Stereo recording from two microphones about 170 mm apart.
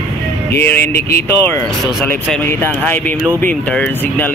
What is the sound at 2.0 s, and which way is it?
Speech, 10° left (ahead or behind).